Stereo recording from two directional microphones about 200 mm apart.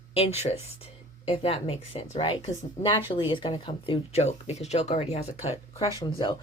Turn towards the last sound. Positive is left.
turn(degrees=20)  # may be behind; listen again after turning